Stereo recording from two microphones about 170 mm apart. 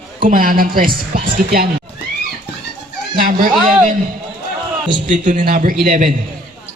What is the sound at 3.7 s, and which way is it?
Speech, 50° right (ahead or behind).